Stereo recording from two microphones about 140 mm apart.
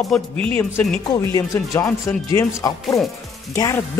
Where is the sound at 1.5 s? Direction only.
20° left (ahead or behind).